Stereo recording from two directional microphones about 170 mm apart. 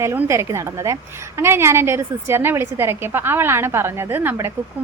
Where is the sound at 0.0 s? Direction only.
15° right (ahead or behind).